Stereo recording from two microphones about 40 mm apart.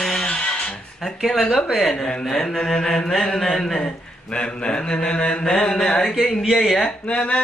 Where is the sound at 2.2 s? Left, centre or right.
Centre.